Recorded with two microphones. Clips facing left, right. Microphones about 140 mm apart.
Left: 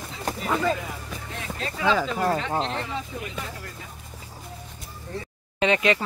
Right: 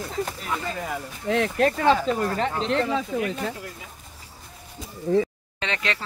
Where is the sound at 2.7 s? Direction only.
90° right.